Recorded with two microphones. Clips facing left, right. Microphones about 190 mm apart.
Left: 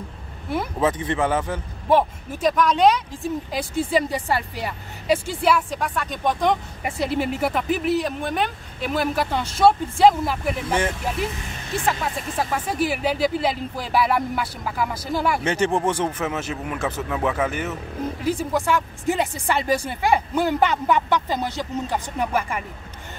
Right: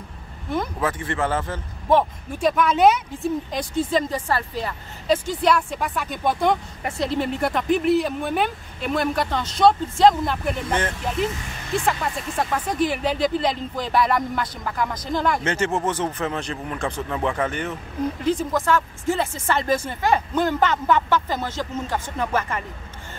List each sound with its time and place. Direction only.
0.7 s speech: 20° left (ahead or behind); by 3.3 s 5° right (ahead or behind)
3.5 s speech: 10° left (ahead or behind)
6.8 s speech: 5° left (ahead or behind)